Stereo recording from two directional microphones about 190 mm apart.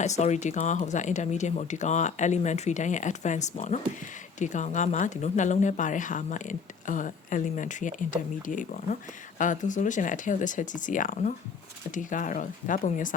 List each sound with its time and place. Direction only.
0.0 s speech: 40° left (ahead or behind)